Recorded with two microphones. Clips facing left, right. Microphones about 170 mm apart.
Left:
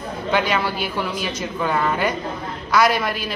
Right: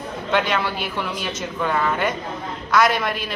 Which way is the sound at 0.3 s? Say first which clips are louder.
Left 1 dB; centre (ahead or behind).